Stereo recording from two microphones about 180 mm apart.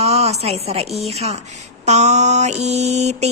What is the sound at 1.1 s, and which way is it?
Mantra, 35° right (ahead or behind).